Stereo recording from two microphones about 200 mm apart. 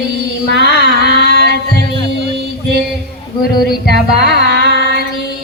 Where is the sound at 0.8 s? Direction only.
55° right (ahead or behind).